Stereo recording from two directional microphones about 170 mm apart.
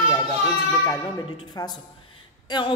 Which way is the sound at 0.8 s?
20° left (ahead or behind).